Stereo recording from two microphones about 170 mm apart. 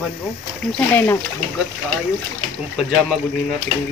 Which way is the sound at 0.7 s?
10° left (ahead or behind).